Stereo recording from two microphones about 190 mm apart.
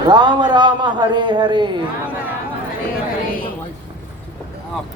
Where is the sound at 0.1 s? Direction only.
25° right (ahead or behind).